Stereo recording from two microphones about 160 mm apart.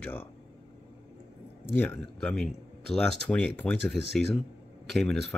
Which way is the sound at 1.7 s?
10° left (ahead or behind).